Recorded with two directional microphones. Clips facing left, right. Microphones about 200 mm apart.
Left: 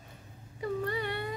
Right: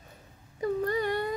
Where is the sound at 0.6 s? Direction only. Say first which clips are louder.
Right 5 dB; 45° right (ahead or behind).